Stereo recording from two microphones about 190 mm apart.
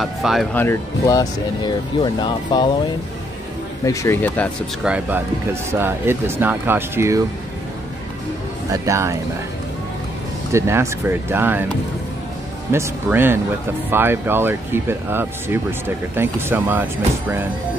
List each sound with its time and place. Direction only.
0.0 s speech: centre (ahead or behind); by 2.7 s 25° left (ahead or behind)
3.8 s speech: 15° left (ahead or behind)
4.8 s speech: 10° right (ahead or behind)
8.6 s speech: 15° right (ahead or behind)
10.5 s speech: 15° right (ahead or behind)
12.7 s speech: 10° right (ahead or behind)